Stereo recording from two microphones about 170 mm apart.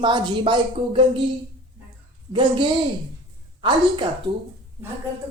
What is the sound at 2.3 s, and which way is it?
Speech, 25° right (ahead or behind).